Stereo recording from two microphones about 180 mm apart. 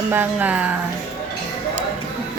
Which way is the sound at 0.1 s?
10° right (ahead or behind).